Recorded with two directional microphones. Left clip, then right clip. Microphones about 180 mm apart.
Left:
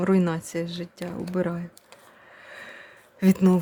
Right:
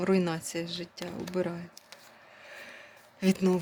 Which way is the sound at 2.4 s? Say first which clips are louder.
Left 4 dB; 30° left (ahead or behind).